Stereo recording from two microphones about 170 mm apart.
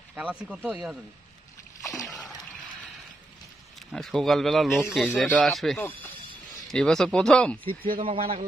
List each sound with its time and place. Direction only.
0.1 s speech: 10° right (ahead or behind)
3.9 s a man's voice: centre (ahead or behind)
8.0 s a man's voice: 35° right (ahead or behind)